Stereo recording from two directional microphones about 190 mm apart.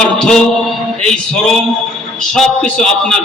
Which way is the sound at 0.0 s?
5° left (ahead or behind).